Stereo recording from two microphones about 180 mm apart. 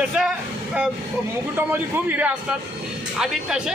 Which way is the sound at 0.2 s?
5° right (ahead or behind).